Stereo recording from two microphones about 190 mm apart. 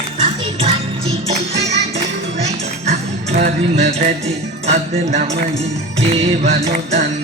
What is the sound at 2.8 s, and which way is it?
Music, 40° right (ahead or behind).